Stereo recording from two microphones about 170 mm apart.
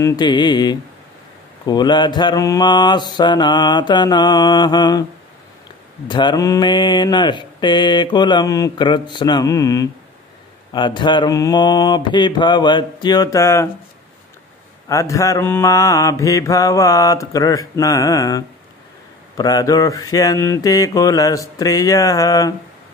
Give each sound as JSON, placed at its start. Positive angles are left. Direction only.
{"t": 0.0, "sound": "mantra", "side_deg": 25}
{"t": 6.0, "sound": "mantra", "side_deg": 25}
{"t": 14.9, "sound": "mantra", "side_deg": 20}